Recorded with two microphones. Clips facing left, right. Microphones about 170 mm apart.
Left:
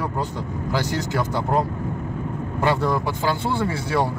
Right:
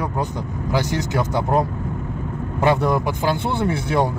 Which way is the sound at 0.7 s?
20° right (ahead or behind).